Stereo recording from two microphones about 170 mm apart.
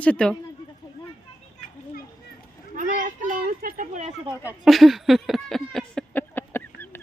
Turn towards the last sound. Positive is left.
turn(degrees=10)  # may be behind; listen again after turning